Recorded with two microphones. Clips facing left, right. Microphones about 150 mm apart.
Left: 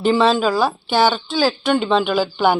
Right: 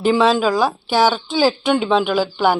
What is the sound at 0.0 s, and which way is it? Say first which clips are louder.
Speech: even; 10° right (ahead or behind).